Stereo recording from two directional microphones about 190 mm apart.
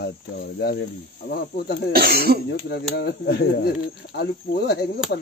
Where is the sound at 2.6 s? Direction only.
60° left (ahead or behind).